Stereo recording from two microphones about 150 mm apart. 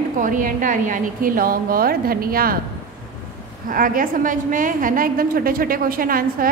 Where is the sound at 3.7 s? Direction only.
70° right (ahead or behind).